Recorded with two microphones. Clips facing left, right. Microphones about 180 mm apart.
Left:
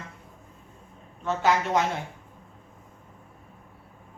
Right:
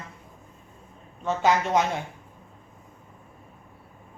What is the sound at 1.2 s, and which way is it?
Speech, 20° right (ahead or behind).